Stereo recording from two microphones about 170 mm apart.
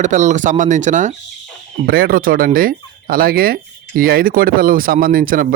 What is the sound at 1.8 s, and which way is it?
Speech, 60° right (ahead or behind).